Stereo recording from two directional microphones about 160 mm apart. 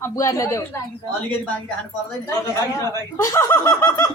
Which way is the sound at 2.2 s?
15° left (ahead or behind).